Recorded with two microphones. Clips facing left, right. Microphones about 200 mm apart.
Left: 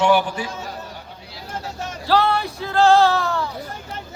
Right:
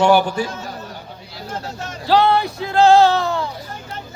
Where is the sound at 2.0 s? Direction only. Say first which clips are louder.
Right 4 dB; 15° right (ahead or behind).